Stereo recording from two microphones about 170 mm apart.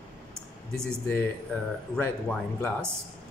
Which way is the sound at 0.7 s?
5° left (ahead or behind).